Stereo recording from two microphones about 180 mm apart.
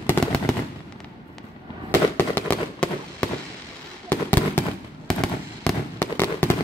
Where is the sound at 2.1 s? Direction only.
10° left (ahead or behind).